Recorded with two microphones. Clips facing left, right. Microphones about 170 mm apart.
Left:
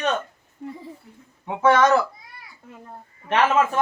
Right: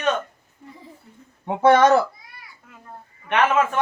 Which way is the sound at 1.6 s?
35° right (ahead or behind).